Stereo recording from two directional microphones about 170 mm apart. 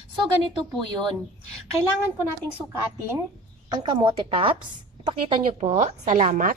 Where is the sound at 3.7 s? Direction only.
25° right (ahead or behind).